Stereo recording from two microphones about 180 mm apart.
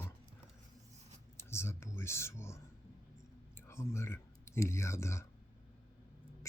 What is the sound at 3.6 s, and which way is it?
Speech, 15° left (ahead or behind).